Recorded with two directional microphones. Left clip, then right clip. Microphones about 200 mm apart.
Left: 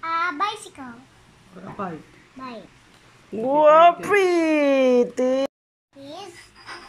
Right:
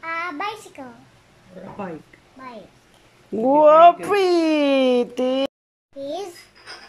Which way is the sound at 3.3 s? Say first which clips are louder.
Right 2 dB; 15° right (ahead or behind).